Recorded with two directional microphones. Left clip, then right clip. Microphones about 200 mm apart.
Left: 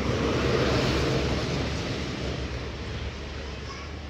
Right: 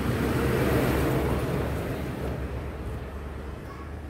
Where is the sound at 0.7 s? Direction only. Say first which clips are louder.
Even; 55° right (ahead or behind).